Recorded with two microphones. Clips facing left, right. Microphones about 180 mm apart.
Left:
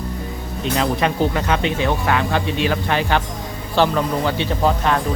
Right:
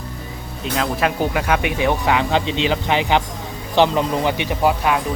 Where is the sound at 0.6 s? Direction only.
Centre (ahead or behind).